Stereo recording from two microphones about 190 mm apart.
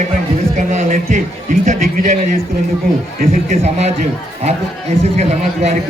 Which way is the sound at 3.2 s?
35° right (ahead or behind).